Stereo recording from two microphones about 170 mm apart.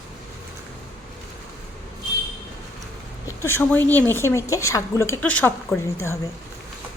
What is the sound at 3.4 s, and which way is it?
A woman's voice, 15° left (ahead or behind).